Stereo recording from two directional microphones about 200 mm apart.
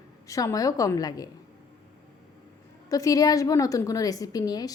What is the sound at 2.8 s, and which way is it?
A woman's voice, 15° left (ahead or behind).